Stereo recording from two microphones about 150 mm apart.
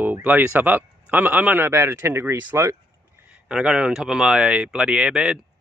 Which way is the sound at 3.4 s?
5° right (ahead or behind).